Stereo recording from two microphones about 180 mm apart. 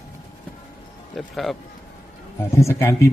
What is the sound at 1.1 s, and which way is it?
Speech, centre (ahead or behind).